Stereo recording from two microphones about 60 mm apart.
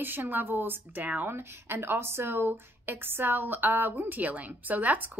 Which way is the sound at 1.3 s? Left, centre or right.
Right.